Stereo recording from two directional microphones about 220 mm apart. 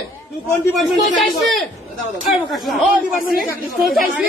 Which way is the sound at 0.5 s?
Centre (ahead or behind).